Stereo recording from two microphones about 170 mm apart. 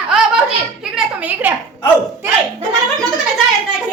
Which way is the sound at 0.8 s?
5° right (ahead or behind).